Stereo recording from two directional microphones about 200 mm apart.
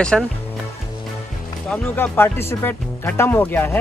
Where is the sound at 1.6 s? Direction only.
10° left (ahead or behind).